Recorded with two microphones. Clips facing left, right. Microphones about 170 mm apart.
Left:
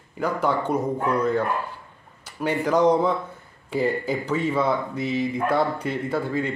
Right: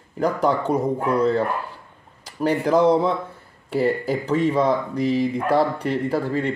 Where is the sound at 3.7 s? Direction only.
30° right (ahead or behind).